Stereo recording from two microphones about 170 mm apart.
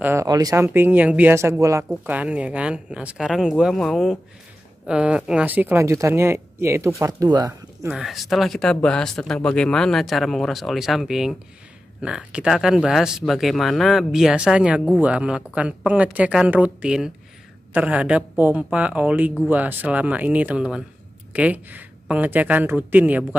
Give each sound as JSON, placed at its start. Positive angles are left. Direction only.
{"t": 0.0, "sound": "speech", "side_deg": -15}
{"t": 7.9, "sound": "speech", "side_deg": 0}